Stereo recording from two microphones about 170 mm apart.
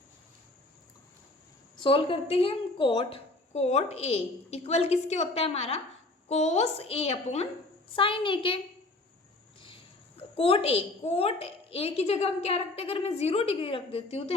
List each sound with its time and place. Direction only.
1.7 s a woman's voice: 30° left (ahead or behind)
10.2 s a woman's voice: 35° left (ahead or behind)